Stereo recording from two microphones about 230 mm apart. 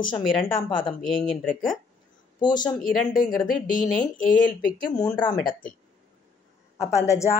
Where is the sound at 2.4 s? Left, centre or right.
Centre.